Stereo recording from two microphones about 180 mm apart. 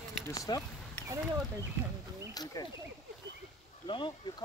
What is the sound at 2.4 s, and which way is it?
Speech, 20° left (ahead or behind).